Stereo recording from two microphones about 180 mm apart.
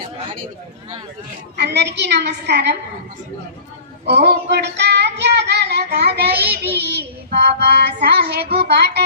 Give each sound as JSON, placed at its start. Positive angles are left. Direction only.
{"t": 1.5, "sound": "child singing", "side_deg": -70}
{"t": 4.0, "sound": "child singing", "side_deg": -70}